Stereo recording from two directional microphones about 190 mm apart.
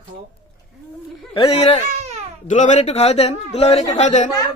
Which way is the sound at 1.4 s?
30° left (ahead or behind).